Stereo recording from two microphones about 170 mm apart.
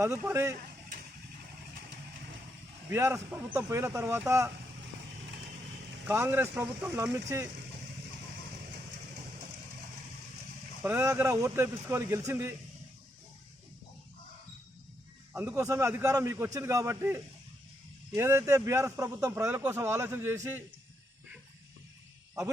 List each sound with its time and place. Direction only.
0.0 s speech: 15° right (ahead or behind)
2.9 s speech: 15° right (ahead or behind)
6.1 s speech: 15° right (ahead or behind)
10.8 s speech: 15° right (ahead or behind)
15.3 s speech: 10° right (ahead or behind)